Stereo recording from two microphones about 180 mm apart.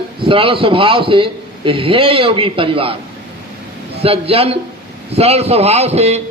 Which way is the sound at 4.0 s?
30° right (ahead or behind).